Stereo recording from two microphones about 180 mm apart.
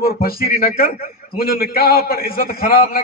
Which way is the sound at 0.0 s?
55° left (ahead or behind).